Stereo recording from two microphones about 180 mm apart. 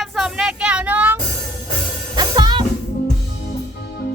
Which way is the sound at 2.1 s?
25° right (ahead or behind).